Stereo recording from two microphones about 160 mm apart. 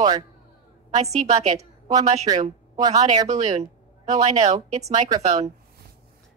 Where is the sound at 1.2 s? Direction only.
25° right (ahead or behind).